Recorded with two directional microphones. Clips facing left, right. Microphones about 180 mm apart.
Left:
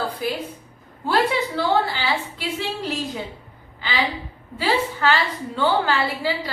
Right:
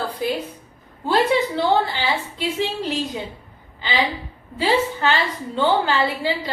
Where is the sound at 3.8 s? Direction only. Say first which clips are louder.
Right 2 dB; 20° right (ahead or behind).